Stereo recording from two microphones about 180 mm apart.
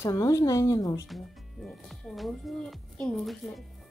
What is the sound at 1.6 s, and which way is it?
Speech, centre (ahead or behind).